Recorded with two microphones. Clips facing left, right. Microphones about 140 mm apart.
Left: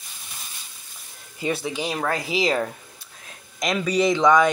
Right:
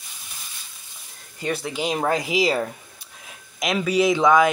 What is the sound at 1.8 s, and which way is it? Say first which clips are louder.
Speech: right 3 dB; 20° right (ahead or behind).